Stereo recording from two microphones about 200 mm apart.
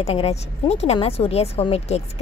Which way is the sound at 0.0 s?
30° left (ahead or behind).